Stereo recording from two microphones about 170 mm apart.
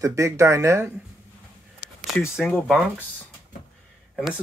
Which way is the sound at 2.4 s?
5° left (ahead or behind).